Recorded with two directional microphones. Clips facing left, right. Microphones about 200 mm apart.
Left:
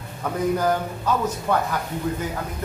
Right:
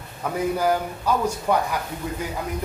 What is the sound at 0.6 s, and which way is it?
A man's voice, 10° right (ahead or behind).